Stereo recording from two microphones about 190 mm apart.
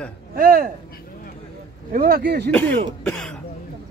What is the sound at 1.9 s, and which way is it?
Speech, 50° right (ahead or behind).